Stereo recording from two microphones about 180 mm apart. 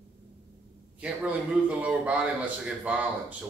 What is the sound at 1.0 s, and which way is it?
A man's voice, 5° right (ahead or behind).